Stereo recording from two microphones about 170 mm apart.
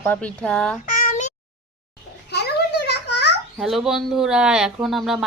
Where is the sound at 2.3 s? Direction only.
75° left (ahead or behind).